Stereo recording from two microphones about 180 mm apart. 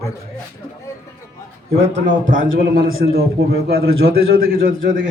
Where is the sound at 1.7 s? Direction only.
75° right (ahead or behind).